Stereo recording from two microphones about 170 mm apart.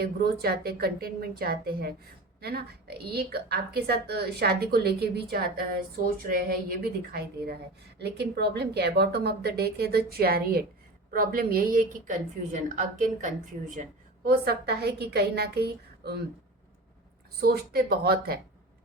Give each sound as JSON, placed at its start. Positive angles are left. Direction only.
{"t": 0.0, "sound": "a woman's voice", "side_deg": -60}
{"t": 7.9, "sound": "a woman's voice", "side_deg": -75}
{"t": 14.3, "sound": "a woman's voice", "side_deg": -70}
{"t": 17.4, "sound": "a woman's voice", "side_deg": -65}